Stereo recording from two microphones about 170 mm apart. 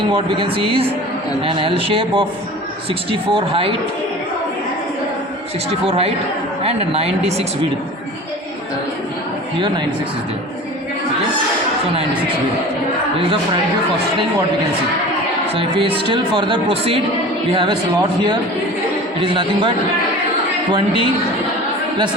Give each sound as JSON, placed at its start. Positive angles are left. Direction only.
{"t": 0.1, "sound": "speech", "side_deg": -30}
{"t": 5.8, "sound": "speech", "side_deg": -35}
{"t": 15.5, "sound": "speech", "side_deg": -30}
{"t": 20.7, "sound": "speech", "side_deg": -30}